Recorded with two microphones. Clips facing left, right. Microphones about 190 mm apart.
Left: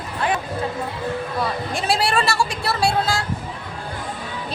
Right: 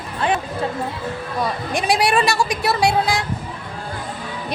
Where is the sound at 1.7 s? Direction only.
15° right (ahead or behind).